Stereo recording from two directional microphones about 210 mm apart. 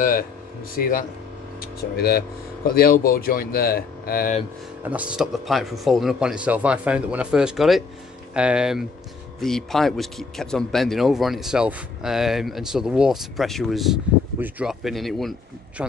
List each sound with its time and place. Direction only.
0.7 s speech: 40° left (ahead or behind)
4.8 s speech: 5° right (ahead or behind)